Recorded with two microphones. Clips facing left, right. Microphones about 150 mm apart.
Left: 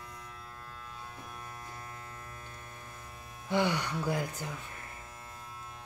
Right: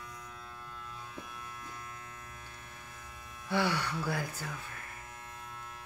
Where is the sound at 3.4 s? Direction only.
15° left (ahead or behind).